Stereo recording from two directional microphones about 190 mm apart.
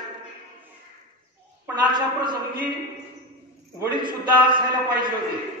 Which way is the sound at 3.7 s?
25° right (ahead or behind).